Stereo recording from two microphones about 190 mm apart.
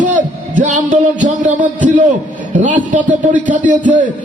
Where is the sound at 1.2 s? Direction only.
40° right (ahead or behind).